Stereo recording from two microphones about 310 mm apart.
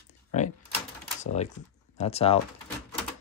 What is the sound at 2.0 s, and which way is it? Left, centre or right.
Speech, centre.